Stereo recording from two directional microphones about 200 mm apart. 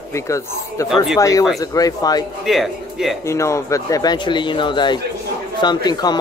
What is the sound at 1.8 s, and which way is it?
Speech, 20° left (ahead or behind).